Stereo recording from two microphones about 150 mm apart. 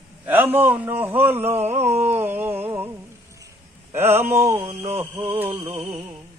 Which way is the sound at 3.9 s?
15° right (ahead or behind).